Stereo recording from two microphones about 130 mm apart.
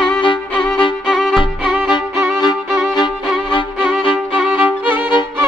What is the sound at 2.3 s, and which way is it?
Violin, 35° left (ahead or behind).